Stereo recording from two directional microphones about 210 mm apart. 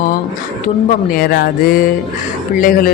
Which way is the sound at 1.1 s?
45° left (ahead or behind).